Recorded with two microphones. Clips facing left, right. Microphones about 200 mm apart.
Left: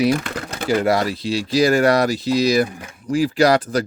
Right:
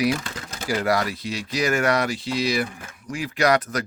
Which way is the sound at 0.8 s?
25° left (ahead or behind).